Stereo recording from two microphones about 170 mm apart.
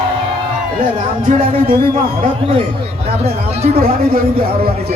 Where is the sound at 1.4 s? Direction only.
60° right (ahead or behind).